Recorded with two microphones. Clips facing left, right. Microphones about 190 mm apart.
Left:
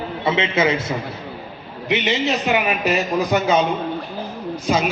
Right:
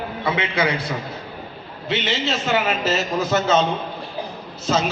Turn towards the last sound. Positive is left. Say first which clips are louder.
# left 1 dB
turn(degrees=10)  # may be behind; listen again after turning